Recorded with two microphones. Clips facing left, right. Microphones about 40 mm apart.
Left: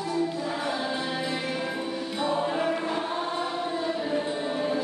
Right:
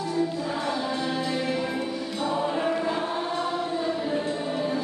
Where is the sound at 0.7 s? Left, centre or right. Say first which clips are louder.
Right 2 dB; centre.